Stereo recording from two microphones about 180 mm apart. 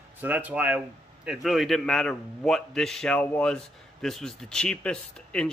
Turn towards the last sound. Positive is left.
turn(degrees=5)  # may be behind; listen again after turning